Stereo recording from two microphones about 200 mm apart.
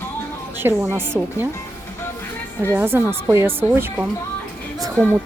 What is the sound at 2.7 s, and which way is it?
Speech, 10° right (ahead or behind).